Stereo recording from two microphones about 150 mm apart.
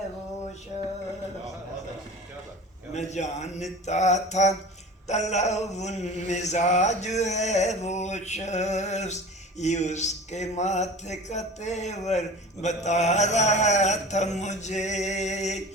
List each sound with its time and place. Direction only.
2.9 s mantra: 50° left (ahead or behind)